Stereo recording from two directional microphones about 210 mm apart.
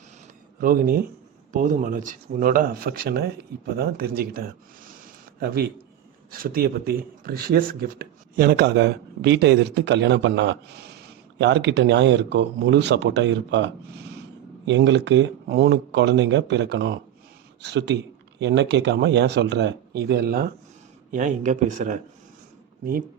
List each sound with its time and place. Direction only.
0.6 s speech: 45° right (ahead or behind)